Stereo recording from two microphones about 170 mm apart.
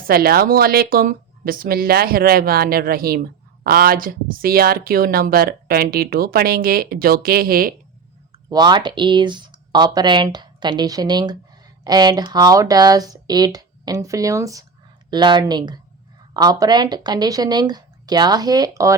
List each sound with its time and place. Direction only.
0.1 s speech: 60° right (ahead or behind)
8.4 s speech: 25° right (ahead or behind)